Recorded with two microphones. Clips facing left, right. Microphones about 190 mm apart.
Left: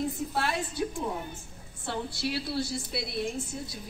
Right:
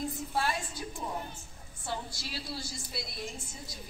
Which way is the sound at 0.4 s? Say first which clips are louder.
Left 3 dB; 65° left (ahead or behind).